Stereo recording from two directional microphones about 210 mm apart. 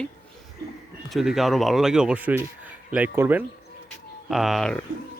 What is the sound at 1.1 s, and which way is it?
A man's voice, centre (ahead or behind).